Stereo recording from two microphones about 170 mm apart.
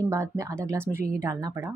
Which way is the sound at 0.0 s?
20° right (ahead or behind).